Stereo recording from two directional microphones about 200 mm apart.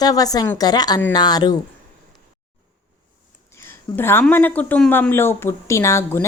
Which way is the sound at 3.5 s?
10° left (ahead or behind).